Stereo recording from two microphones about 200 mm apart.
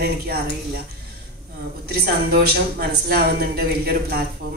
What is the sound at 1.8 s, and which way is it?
Speech, 50° right (ahead or behind).